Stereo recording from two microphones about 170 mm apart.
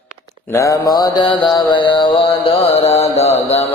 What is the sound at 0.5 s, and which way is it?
Mantra, 20° left (ahead or behind).